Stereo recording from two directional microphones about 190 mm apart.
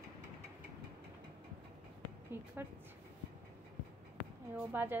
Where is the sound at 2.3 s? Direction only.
10° right (ahead or behind).